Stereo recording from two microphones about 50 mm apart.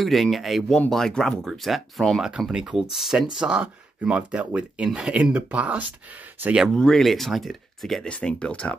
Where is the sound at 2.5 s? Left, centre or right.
Centre.